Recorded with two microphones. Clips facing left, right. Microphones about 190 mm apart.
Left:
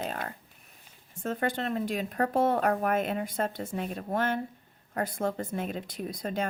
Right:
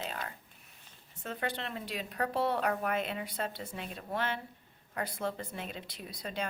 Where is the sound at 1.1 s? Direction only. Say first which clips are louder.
Left 7 dB; 45° left (ahead or behind).